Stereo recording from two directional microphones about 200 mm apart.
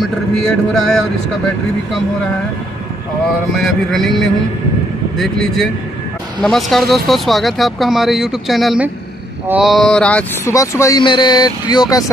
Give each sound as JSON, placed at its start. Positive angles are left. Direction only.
{"t": 0.4, "sound": "speech", "side_deg": 0}
{"t": 3.5, "sound": "speech", "side_deg": 0}
{"t": 5.1, "sound": "speech", "side_deg": 0}